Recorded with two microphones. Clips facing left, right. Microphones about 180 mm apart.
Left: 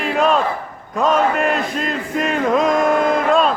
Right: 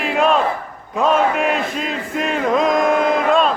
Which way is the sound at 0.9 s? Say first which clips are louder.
Even; centre (ahead or behind).